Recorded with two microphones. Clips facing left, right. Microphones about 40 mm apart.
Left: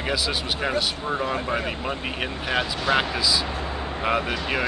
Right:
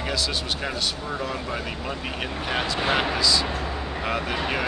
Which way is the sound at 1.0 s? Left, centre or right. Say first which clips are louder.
Left 4 dB; left.